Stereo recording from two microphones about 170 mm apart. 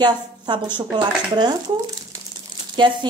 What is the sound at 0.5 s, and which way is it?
Speech, 25° right (ahead or behind).